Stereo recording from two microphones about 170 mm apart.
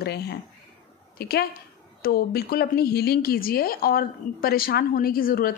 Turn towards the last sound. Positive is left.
turn(degrees=55)  # may be behind; listen again after turning